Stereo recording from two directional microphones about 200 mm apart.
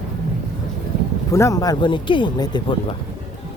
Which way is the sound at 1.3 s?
15° left (ahead or behind).